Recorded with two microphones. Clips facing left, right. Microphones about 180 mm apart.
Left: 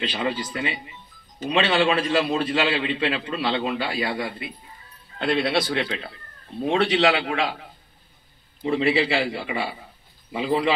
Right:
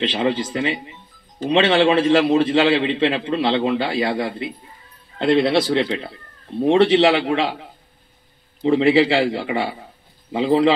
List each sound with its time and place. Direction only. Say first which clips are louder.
0.0 s a man's voice: right 6 dB; 25° right (ahead or behind)
8.6 s a man's voice: right 6 dB; 30° right (ahead or behind)